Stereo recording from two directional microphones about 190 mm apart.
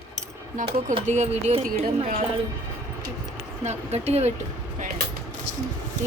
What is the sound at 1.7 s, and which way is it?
Speech, 45° right (ahead or behind).